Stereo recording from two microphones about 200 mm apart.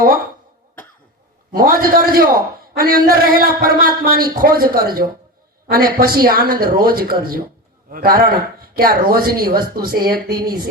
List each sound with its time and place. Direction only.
1.5 s a man's voice: 45° right (ahead or behind)